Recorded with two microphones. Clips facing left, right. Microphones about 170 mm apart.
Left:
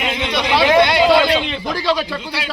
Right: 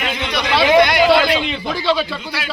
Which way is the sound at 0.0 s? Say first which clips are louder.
Left 2 dB; 25° left (ahead or behind).